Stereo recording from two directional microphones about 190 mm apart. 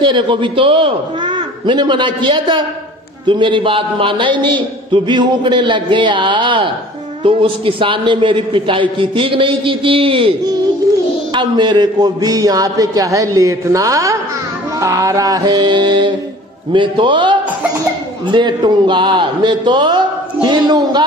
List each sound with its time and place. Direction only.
0.0 s a man's voice: 25° right (ahead or behind)